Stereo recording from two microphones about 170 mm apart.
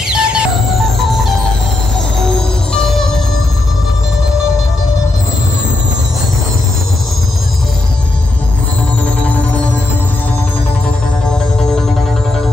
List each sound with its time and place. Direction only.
0.1 s music: 5° right (ahead or behind)
2.1 s music: 5° left (ahead or behind)